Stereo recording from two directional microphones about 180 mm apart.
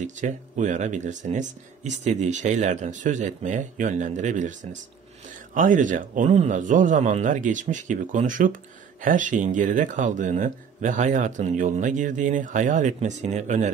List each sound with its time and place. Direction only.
0.0 s speech: 45° right (ahead or behind)